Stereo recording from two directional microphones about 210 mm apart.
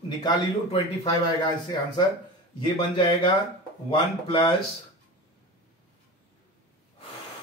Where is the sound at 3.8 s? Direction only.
20° left (ahead or behind).